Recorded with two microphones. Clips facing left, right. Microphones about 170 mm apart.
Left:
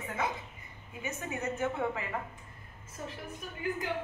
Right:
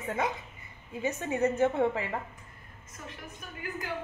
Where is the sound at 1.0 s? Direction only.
35° right (ahead or behind).